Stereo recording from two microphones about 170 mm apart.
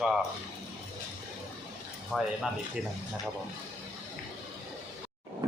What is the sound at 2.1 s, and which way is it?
Speech, centre (ahead or behind).